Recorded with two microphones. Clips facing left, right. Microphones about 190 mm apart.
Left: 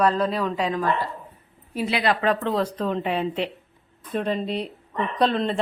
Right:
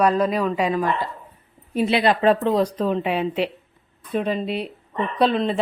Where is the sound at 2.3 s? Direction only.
15° right (ahead or behind).